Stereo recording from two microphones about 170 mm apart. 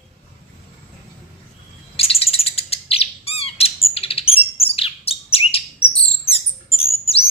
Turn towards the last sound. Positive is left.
turn(degrees=35)  # may be behind; listen again after turning